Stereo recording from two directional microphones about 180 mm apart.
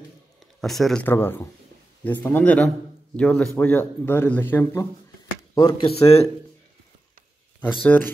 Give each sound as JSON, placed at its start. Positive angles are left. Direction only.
{"t": 0.6, "sound": "speech", "side_deg": 0}
{"t": 5.5, "sound": "speech", "side_deg": 25}
{"t": 7.8, "sound": "speech", "side_deg": 10}